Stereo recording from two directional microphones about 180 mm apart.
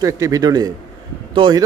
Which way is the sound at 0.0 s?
20° right (ahead or behind).